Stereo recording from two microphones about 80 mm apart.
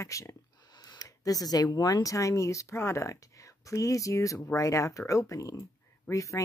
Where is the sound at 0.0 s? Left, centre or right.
Left.